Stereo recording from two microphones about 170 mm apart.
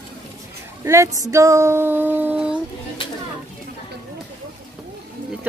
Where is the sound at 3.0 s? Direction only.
30° left (ahead or behind).